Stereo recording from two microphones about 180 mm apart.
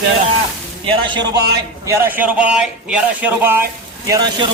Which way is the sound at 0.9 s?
25° right (ahead or behind).